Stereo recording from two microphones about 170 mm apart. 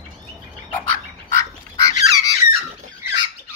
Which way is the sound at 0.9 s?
15° left (ahead or behind).